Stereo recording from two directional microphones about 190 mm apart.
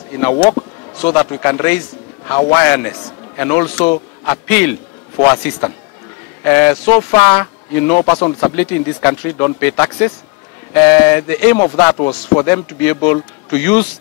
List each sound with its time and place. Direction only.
0.4 s speech: 20° left (ahead or behind)
12.4 s speech: 15° left (ahead or behind)